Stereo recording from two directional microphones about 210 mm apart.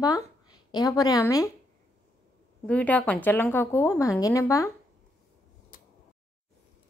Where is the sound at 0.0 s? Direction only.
20° left (ahead or behind).